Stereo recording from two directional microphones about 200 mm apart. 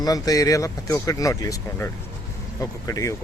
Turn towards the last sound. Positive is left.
turn(degrees=15)  # may be behind; listen again after turning